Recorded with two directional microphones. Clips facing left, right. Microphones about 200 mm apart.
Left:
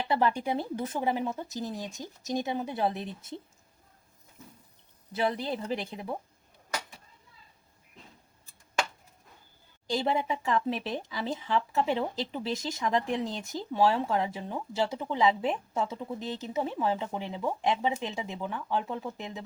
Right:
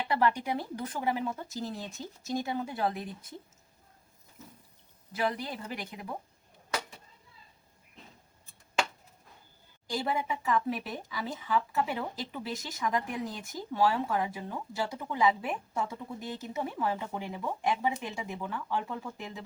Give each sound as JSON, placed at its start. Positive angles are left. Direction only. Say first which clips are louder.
{"t": 0.1, "sound": "speech", "louder": "left 1 dB", "side_deg": 25}
{"t": 5.1, "sound": "speech", "louder": "left 3 dB", "side_deg": 25}
{"t": 9.8, "sound": "speech", "louder": "left 4 dB", "side_deg": 25}